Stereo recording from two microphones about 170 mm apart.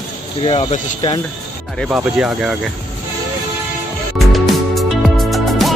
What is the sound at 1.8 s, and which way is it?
Speech, 5° right (ahead or behind).